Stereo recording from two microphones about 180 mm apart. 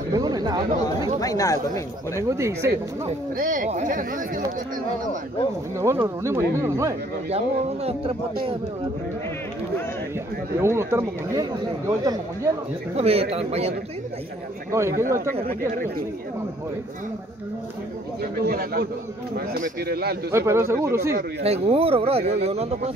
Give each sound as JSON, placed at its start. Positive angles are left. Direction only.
{"t": 0.1, "sound": "chatter", "side_deg": -20}
{"t": 1.2, "sound": "speech", "side_deg": 20}
{"t": 2.1, "sound": "speech", "side_deg": -15}
{"t": 3.3, "sound": "speech", "side_deg": -50}
{"t": 5.8, "sound": "speech", "side_deg": -15}
{"t": 7.2, "sound": "speech", "side_deg": -35}
{"t": 10.6, "sound": "speech", "side_deg": -15}
{"t": 12.9, "sound": "speech", "side_deg": -35}
{"t": 14.7, "sound": "speech", "side_deg": -15}
{"t": 18.4, "sound": "speech", "side_deg": -60}
{"t": 20.2, "sound": "speech", "side_deg": -15}
{"t": 21.4, "sound": "speech", "side_deg": -35}